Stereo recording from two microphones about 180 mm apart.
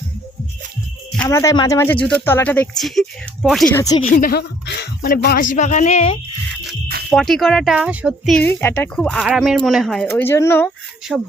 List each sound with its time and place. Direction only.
1.2 s speech: 15° left (ahead or behind); by 3.7 s centre (ahead or behind)
3.8 s speech: 20° left (ahead or behind)
4.0 s speech: 50° left (ahead or behind)
7.1 s speech: centre (ahead or behind)
8.4 s speech: 10° left (ahead or behind)
9.1 s speech: 5° right (ahead or behind)
10.1 s speech: 15° left (ahead or behind)
11.1 s speech: centre (ahead or behind)